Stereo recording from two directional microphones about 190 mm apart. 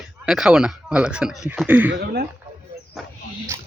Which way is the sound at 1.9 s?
55° right (ahead or behind).